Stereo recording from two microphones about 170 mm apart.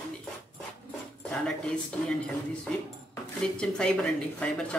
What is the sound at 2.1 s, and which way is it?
Speech, 5° left (ahead or behind).